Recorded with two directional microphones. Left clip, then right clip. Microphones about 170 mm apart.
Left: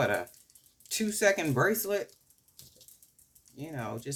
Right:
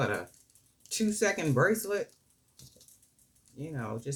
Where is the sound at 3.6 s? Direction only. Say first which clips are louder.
Left 1 dB; 45° left (ahead or behind).